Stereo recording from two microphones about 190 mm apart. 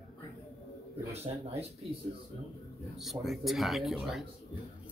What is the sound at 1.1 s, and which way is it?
Speech, 35° right (ahead or behind).